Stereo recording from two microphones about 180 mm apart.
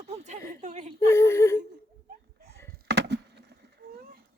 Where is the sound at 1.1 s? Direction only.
15° left (ahead or behind).